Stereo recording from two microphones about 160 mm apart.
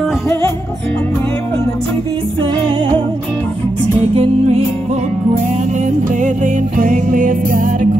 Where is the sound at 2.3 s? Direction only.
30° right (ahead or behind).